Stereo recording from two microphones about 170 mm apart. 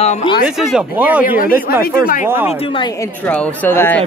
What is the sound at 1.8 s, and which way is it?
Speech, 55° left (ahead or behind).